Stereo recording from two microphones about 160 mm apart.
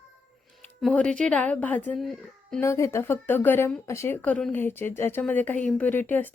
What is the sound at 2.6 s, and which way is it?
Speech, 20° left (ahead or behind).